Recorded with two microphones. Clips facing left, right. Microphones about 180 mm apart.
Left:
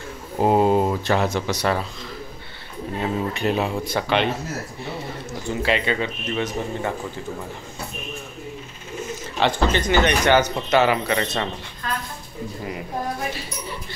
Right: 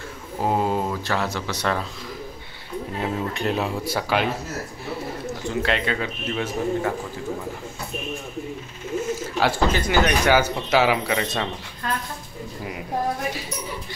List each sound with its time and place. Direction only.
0.4 s speech: 20° left (ahead or behind)
1.6 s speech: 5° left (ahead or behind)
3.0 s speech: centre (ahead or behind)
5.6 s speech: centre (ahead or behind)
9.4 s speech: 5° right (ahead or behind)